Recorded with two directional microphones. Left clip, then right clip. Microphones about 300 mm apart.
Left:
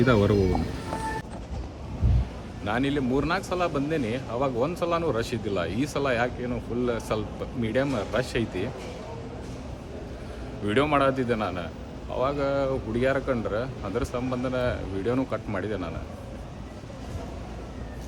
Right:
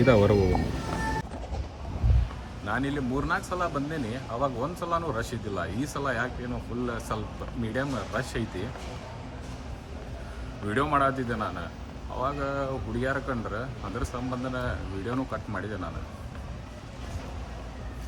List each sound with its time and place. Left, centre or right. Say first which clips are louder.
0.0 s speech: right 1 dB; centre
2.6 s speech: left 4 dB; centre
10.7 s speech: left 2 dB; centre